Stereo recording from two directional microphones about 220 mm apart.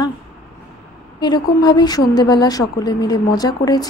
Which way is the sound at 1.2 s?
20° left (ahead or behind).